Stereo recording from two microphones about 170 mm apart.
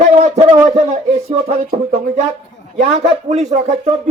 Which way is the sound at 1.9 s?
40° right (ahead or behind).